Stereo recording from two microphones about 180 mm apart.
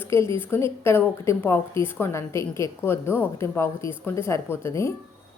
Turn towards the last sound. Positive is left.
turn(degrees=15)  # may be behind; listen again after turning